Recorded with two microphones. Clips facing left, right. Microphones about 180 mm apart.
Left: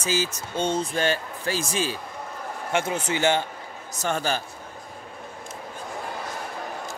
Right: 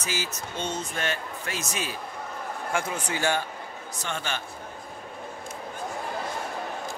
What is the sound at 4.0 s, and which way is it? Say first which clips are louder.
Speech: left 7 dB; 40° left (ahead or behind).